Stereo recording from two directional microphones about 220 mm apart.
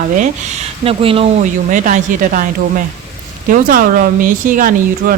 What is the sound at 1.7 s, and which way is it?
Speech, 35° right (ahead or behind).